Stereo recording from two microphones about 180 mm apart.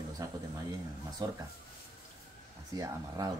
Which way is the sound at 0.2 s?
20° right (ahead or behind).